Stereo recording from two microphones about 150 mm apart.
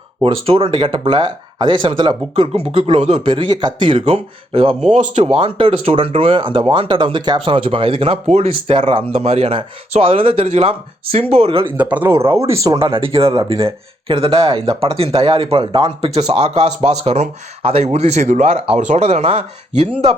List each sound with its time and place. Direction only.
0.3 s speech: 40° right (ahead or behind)
4.9 s speech: 50° right (ahead or behind)
11.8 s speech: 10° right (ahead or behind)
12.9 s speech: 40° right (ahead or behind)